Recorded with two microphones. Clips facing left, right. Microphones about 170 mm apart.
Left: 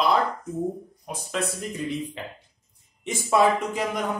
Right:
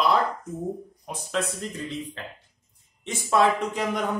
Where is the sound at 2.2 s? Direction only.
15° left (ahead or behind).